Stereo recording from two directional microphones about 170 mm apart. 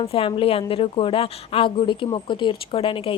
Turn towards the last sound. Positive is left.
turn(degrees=30)  # may be behind; listen again after turning